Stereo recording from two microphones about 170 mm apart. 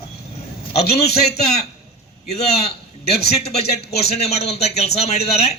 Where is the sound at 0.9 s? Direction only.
40° left (ahead or behind).